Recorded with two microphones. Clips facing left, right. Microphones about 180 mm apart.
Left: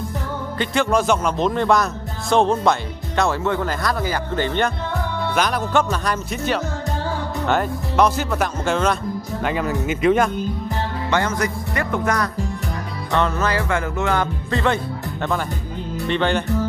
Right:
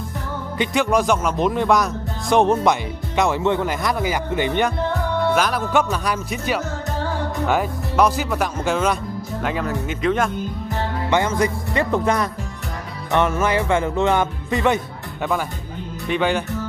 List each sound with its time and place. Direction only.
0.9 s speech: 10° right (ahead or behind)
11.1 s music: 20° right (ahead or behind)
16.1 s speech: 5° right (ahead or behind)